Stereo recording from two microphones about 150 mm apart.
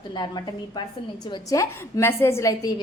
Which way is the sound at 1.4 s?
20° left (ahead or behind).